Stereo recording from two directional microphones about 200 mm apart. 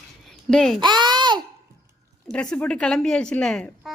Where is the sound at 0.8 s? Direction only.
20° right (ahead or behind).